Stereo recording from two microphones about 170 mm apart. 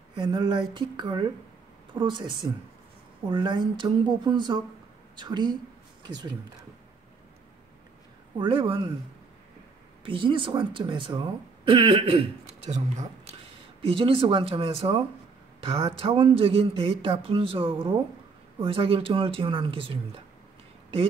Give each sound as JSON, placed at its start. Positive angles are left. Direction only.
{"t": 0.1, "sound": "speech", "side_deg": -25}
{"t": 8.4, "sound": "speech", "side_deg": -30}
{"t": 10.0, "sound": "speech", "side_deg": -30}